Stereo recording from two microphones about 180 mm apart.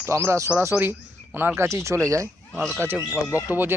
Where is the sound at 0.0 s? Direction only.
15° right (ahead or behind).